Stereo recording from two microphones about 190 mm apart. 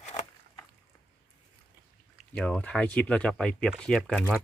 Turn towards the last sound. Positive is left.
turn(degrees=5)  # may be behind; listen again after turning